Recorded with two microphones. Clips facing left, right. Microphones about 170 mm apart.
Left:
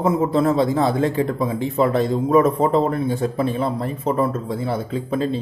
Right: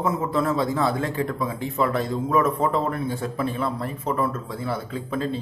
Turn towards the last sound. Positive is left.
turn(degrees=20)  # may be behind; listen again after turning